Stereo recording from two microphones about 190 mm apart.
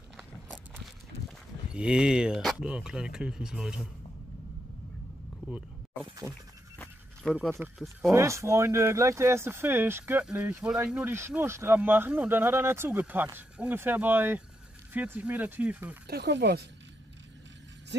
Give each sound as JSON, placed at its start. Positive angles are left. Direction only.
{"t": 0.2, "sound": "walk", "side_deg": -5}
{"t": 1.7, "sound": "speech", "side_deg": -5}
{"t": 6.8, "sound": "a sound", "side_deg": 5}
{"t": 8.1, "sound": "speech", "side_deg": -15}
{"t": 16.1, "sound": "speech", "side_deg": -60}